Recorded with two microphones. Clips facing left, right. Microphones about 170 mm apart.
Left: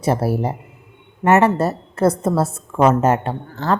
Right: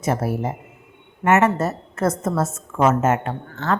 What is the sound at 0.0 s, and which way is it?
A woman's voice, 35° left (ahead or behind).